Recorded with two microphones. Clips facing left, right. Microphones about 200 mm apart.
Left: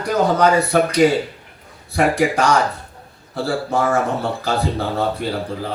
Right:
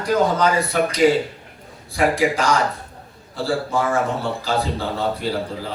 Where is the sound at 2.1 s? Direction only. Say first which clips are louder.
Left 2 dB; 65° left (ahead or behind).